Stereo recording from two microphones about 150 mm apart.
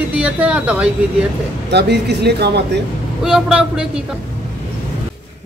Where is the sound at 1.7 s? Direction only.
90° right.